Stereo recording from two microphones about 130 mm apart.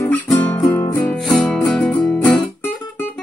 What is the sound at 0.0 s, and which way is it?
Music, 10° left (ahead or behind).